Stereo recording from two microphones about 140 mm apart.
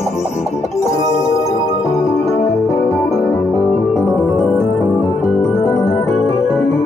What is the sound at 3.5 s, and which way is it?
Music, 5° right (ahead or behind).